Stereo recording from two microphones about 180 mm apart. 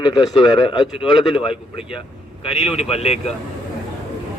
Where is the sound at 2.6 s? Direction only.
35° left (ahead or behind).